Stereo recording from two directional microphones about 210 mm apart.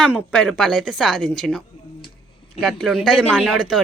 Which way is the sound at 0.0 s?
5° left (ahead or behind).